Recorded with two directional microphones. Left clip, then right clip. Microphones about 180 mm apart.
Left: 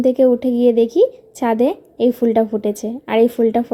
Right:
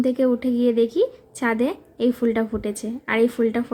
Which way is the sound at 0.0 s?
15° left (ahead or behind).